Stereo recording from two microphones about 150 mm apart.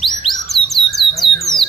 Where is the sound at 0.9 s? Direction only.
Centre (ahead or behind).